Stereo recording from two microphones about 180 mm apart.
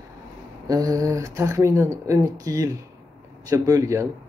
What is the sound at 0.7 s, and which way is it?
Speech, 20° right (ahead or behind).